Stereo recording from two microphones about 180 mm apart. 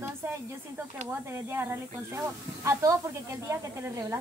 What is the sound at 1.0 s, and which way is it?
Speech, 15° right (ahead or behind).